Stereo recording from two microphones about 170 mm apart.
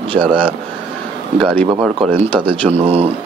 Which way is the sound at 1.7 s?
25° right (ahead or behind).